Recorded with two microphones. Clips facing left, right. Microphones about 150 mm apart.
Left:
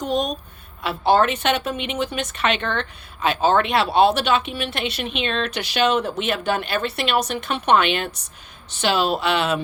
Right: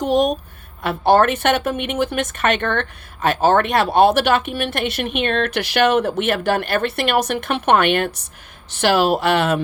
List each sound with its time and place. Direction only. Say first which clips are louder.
0.8 s speech: right 3 dB; 55° right (ahead or behind)